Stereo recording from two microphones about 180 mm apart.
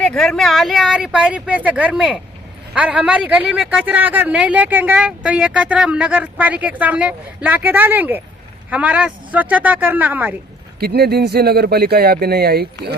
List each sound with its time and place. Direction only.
0.0 s speech: 5° left (ahead or behind)
10.8 s speech: 60° right (ahead or behind)